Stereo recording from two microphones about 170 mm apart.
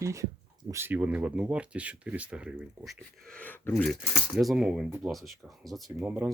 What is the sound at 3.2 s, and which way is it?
Speech, 10° left (ahead or behind).